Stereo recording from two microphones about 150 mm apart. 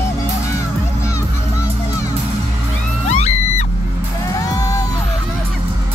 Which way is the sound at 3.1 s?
50° left (ahead or behind).